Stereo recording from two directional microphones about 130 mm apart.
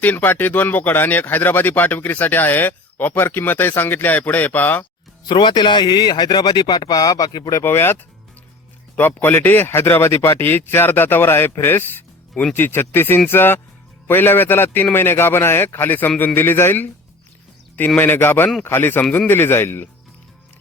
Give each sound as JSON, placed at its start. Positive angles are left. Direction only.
{"t": 0.0, "sound": "speech", "side_deg": 15}
{"t": 5.2, "sound": "speech", "side_deg": 35}
{"t": 7.6, "sound": "speech", "side_deg": 20}
{"t": 9.0, "sound": "speech", "side_deg": 15}